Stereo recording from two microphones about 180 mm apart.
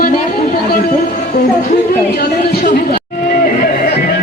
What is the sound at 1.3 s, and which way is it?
Speech, 60° left (ahead or behind).